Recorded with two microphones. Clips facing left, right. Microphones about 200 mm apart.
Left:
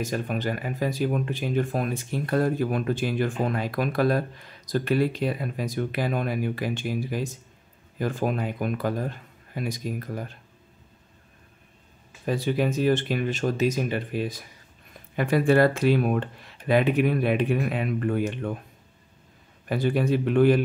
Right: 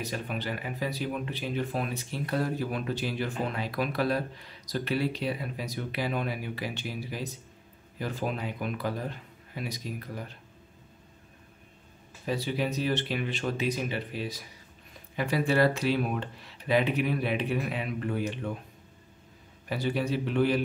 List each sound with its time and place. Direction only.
0.0 s speech: 45° left (ahead or behind)
12.3 s speech: 50° left (ahead or behind)
19.7 s speech: 50° left (ahead or behind)